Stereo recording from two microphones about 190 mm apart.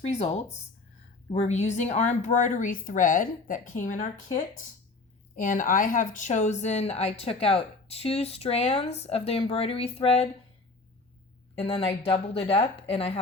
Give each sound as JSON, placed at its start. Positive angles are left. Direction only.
{"t": 0.0, "sound": "speech", "side_deg": 35}
{"t": 11.5, "sound": "speech", "side_deg": 30}